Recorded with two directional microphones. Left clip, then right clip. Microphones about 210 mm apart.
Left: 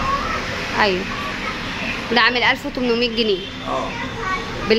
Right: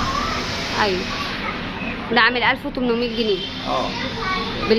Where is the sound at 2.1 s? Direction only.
20° left (ahead or behind).